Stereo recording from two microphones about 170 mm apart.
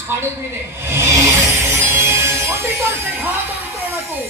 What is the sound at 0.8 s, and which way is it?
Music, 15° right (ahead or behind).